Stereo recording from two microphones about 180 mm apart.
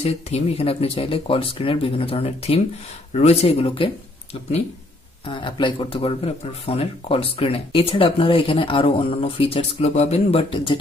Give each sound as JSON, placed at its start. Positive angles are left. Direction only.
{"t": 0.0, "sound": "speech", "side_deg": 35}
{"t": 5.2, "sound": "speech", "side_deg": 25}